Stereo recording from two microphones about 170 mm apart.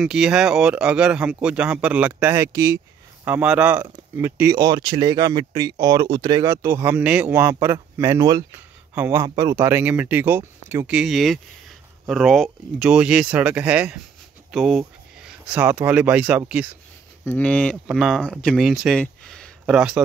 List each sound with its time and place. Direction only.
0.0 s speech: 5° right (ahead or behind); by 2.8 s 20° right (ahead or behind)
3.3 s speech: 10° right (ahead or behind)
17.2 s speech: 10° left (ahead or behind)
18.9 s a sound: 5° left (ahead or behind)